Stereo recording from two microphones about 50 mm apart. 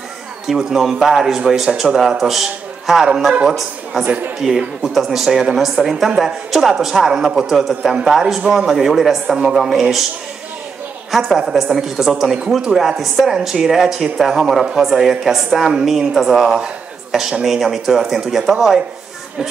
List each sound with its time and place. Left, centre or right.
0.5 s a woman's voice: centre
4.4 s speech: centre
4.9 s a woman's voice: centre
11.1 s a woman's voice: centre